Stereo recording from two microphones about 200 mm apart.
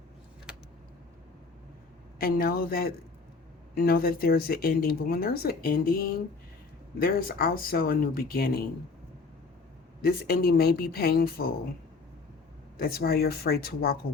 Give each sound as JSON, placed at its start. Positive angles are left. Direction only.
{"t": 2.1, "sound": "speech", "side_deg": 50}
{"t": 10.0, "sound": "speech", "side_deg": 50}
{"t": 12.8, "sound": "speech", "side_deg": 50}